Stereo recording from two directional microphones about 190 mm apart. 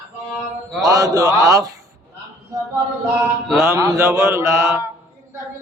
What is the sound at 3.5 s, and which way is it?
Mantra, 15° right (ahead or behind).